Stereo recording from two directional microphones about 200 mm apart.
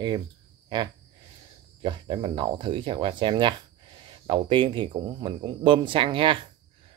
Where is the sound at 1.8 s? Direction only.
25° right (ahead or behind).